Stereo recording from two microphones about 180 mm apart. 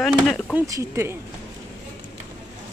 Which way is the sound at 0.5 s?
15° right (ahead or behind).